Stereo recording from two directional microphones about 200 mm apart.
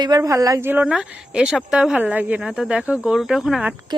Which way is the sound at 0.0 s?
20° right (ahead or behind).